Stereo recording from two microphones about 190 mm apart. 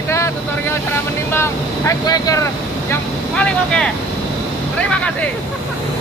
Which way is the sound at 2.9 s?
5° left (ahead or behind).